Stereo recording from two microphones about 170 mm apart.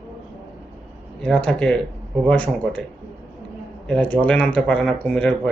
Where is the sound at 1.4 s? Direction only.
5° left (ahead or behind).